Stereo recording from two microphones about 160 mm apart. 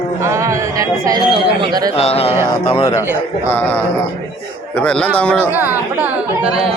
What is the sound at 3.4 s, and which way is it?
A man's voice, 10° left (ahead or behind).